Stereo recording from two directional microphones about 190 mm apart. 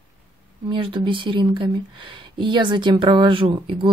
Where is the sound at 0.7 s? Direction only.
25° right (ahead or behind).